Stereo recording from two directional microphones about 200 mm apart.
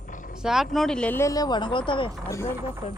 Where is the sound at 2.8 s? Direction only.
30° left (ahead or behind).